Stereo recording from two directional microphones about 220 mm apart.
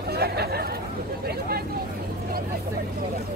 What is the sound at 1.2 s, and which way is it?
Vehicle, 45° right (ahead or behind).